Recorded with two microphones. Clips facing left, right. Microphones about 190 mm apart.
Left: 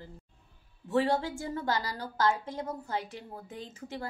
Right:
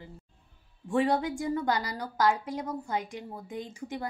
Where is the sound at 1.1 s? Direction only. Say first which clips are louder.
Right 3 dB; 15° right (ahead or behind).